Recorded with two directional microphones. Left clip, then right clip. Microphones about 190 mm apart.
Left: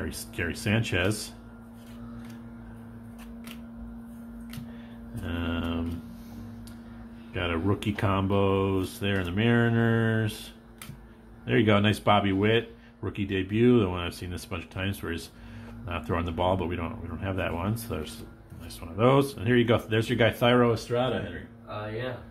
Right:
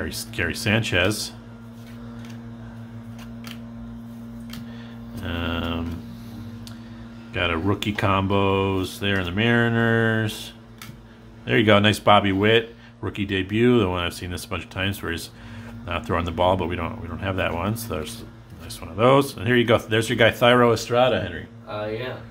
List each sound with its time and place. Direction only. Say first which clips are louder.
0.0 s speech: right 6 dB; 10° right (ahead or behind)
5.2 s mantra: right 5 dB; 5° right (ahead or behind)
7.3 s speech: right 6 dB; 5° right (ahead or behind)
11.4 s speech: right 6 dB; 10° right (ahead or behind)
20.7 s speech: right 9 dB; 25° right (ahead or behind)